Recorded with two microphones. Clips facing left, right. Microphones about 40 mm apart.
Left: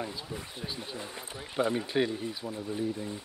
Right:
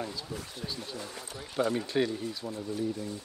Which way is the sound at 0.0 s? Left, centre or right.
Centre.